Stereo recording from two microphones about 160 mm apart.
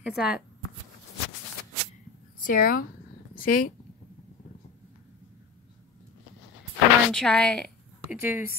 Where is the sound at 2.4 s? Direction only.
60° left (ahead or behind).